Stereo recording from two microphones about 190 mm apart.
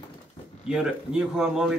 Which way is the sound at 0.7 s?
5° right (ahead or behind).